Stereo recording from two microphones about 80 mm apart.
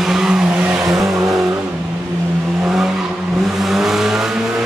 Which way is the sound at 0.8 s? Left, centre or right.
Right.